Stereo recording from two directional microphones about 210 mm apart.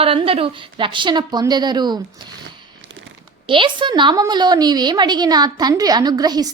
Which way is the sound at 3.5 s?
25° right (ahead or behind).